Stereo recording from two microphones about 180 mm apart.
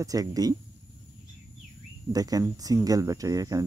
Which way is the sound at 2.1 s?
20° right (ahead or behind).